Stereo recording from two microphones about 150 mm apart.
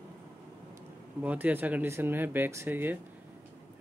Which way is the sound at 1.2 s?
10° right (ahead or behind).